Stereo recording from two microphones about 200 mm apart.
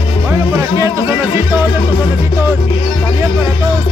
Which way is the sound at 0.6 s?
15° right (ahead or behind).